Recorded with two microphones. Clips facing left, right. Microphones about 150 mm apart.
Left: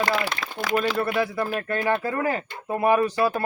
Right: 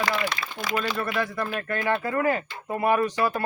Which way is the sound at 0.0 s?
50° left (ahead or behind).